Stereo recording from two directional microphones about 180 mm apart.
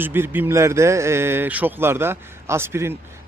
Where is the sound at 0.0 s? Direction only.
10° right (ahead or behind).